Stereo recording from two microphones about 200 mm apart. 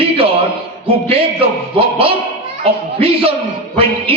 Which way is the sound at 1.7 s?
25° right (ahead or behind).